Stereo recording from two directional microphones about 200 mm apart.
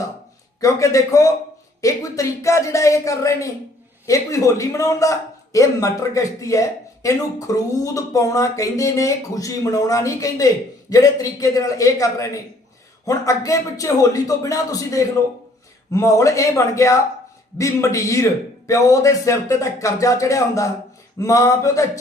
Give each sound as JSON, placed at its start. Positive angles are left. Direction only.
{"t": 0.6, "sound": "a man's voice", "side_deg": 15}